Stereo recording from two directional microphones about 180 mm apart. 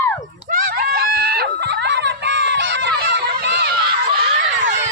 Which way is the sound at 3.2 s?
70° right (ahead or behind).